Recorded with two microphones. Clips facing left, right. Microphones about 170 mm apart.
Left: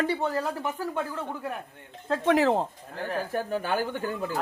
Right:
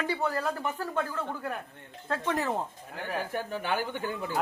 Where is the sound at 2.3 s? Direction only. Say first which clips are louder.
Left 9 dB; 90° left.